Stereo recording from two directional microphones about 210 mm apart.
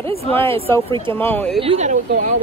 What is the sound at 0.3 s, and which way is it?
Speech, 10° left (ahead or behind).